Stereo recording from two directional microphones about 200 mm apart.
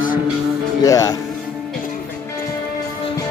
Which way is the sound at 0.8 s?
15° left (ahead or behind).